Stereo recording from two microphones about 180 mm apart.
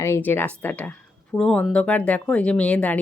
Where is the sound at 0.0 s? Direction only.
10° left (ahead or behind).